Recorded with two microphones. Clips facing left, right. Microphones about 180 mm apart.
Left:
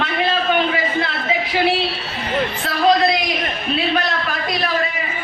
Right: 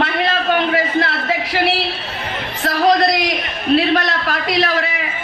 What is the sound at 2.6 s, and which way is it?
Speech, 75° right (ahead or behind).